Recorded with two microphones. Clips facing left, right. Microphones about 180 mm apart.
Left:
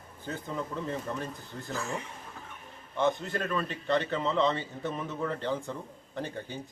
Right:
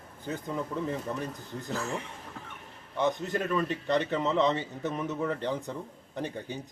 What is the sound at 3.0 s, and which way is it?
A man's voice, 15° right (ahead or behind).